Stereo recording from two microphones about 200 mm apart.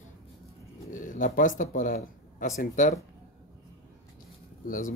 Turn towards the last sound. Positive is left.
turn(degrees=45)  # may be behind; listen again after turning